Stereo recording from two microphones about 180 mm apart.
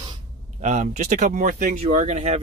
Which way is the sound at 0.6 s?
45° right (ahead or behind).